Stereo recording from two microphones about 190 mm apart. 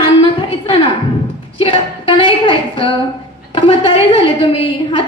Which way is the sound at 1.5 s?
30° left (ahead or behind).